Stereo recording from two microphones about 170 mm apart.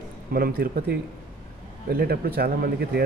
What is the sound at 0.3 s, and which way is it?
A man's voice, 60° right (ahead or behind).